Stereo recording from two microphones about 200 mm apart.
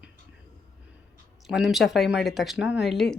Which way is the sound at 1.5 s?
Centre (ahead or behind).